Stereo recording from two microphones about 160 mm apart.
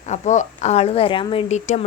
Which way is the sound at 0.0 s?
50° left (ahead or behind).